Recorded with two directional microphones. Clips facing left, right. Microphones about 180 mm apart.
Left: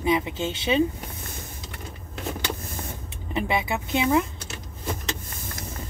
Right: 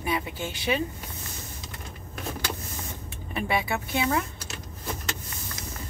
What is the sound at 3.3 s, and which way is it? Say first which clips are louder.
Speech: left 2 dB; 20° left (ahead or behind).